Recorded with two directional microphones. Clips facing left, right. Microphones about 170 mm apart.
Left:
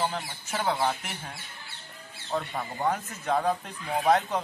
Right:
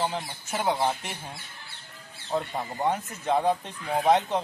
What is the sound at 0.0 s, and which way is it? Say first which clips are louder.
Speech: right 1 dB; 5° right (ahead or behind).